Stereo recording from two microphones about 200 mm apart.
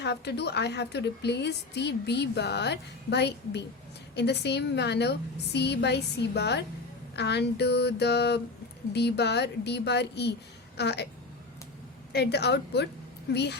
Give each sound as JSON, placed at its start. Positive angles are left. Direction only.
{"t": 0.0, "sound": "a woman's voice", "side_deg": 55}
{"t": 12.1, "sound": "a woman's voice", "side_deg": 55}